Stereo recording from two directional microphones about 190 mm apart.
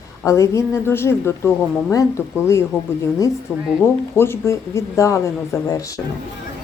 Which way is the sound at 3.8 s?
10° left (ahead or behind).